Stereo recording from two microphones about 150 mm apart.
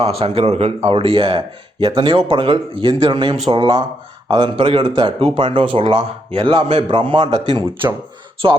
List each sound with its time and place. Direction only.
0.0 s speech: 45° right (ahead or behind)